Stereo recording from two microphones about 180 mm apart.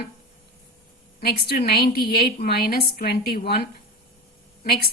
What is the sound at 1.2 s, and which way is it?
A woman's voice, 55° left (ahead or behind).